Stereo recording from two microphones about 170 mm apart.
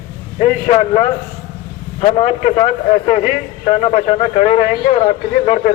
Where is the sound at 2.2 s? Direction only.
40° left (ahead or behind).